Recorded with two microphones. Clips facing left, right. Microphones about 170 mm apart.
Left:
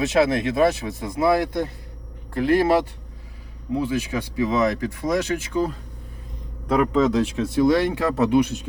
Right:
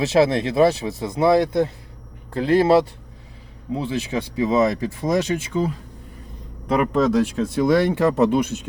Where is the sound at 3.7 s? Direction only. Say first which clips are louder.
Left 1 dB; 25° right (ahead or behind).